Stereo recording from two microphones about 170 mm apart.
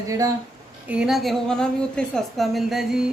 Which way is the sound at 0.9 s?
5° right (ahead or behind).